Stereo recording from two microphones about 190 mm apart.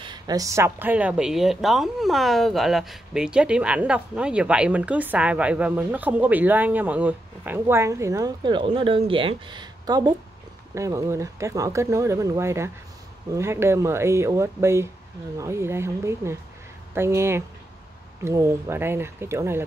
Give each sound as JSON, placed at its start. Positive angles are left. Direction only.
{"t": 0.0, "sound": "speech", "side_deg": -20}